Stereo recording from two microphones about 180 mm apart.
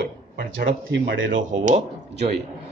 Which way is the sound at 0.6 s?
80° right.